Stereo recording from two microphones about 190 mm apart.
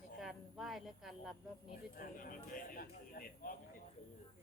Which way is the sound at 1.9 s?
50° left (ahead or behind).